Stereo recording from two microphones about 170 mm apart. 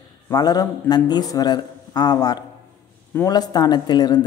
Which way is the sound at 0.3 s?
25° left (ahead or behind).